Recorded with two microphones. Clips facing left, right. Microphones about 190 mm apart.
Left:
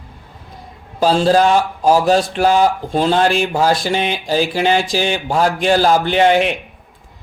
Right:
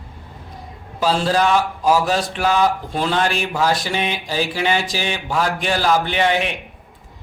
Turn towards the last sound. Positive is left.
turn(degrees=35)  # may be behind; listen again after turning